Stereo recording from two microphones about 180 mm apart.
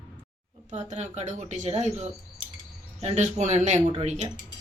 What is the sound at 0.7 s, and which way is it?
A woman's voice, 40° right (ahead or behind).